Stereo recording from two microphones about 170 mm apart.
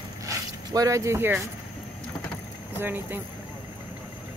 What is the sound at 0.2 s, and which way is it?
Zipper, 20° right (ahead or behind).